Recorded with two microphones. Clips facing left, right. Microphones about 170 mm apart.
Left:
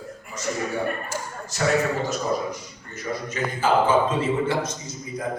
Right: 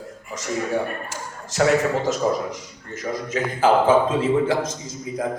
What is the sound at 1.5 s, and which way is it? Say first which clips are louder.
Speech: right 5 dB; 90° right.